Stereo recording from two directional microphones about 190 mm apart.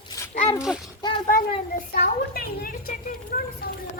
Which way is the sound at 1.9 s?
50° left (ahead or behind).